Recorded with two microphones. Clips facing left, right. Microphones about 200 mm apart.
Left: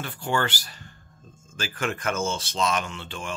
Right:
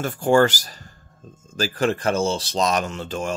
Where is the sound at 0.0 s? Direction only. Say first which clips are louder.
Right 10 dB; 45° right (ahead or behind).